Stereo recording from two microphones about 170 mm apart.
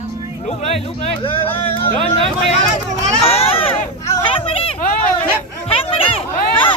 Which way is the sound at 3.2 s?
35° left (ahead or behind).